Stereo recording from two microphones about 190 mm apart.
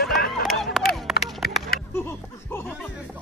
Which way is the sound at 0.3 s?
Centre (ahead or behind).